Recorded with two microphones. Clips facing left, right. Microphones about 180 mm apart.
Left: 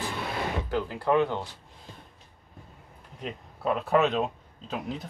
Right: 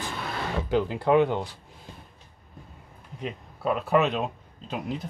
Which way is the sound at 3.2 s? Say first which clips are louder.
Right 2 dB; centre (ahead or behind).